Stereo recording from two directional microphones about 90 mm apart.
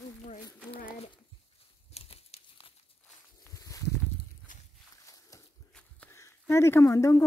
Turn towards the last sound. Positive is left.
turn(degrees=35)  # may be behind; listen again after turning